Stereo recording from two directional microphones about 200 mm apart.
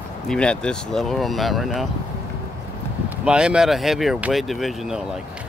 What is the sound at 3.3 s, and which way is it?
Speech, 5° right (ahead or behind).